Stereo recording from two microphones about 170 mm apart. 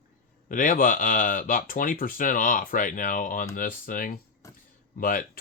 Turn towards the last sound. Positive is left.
turn(degrees=55)  # may be behind; listen again after turning